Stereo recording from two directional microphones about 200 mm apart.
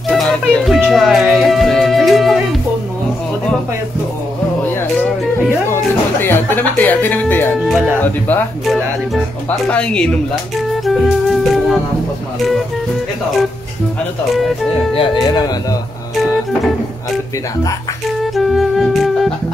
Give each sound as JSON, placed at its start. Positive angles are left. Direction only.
{"t": 0.1, "sound": "music", "side_deg": 0}
{"t": 6.2, "sound": "speech", "side_deg": 10}
{"t": 7.5, "sound": "speech", "side_deg": 0}
{"t": 8.0, "sound": "speech", "side_deg": 10}
{"t": 10.9, "sound": "music", "side_deg": 0}
{"t": 15.2, "sound": "speech", "side_deg": 20}
{"t": 18.2, "sound": "music", "side_deg": 0}